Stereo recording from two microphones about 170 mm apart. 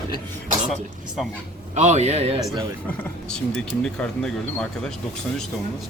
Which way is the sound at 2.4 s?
20° right (ahead or behind).